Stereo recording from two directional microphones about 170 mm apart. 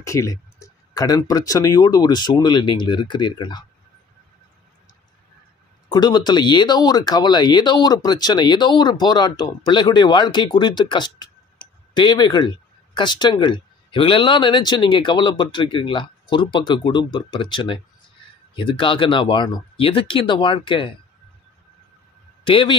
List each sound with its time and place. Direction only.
0.0 s speech: 20° left (ahead or behind)
5.9 s speech: 25° left (ahead or behind)
22.5 s speech: 30° left (ahead or behind)